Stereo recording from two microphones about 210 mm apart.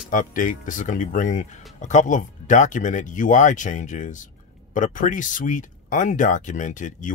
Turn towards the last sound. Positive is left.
turn(degrees=35)  # may be behind; listen again after turning